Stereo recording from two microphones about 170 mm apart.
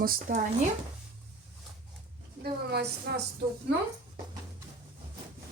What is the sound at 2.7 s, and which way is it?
Speech, 75° right (ahead or behind).